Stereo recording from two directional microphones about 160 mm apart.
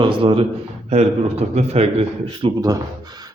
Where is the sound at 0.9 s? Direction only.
40° right (ahead or behind).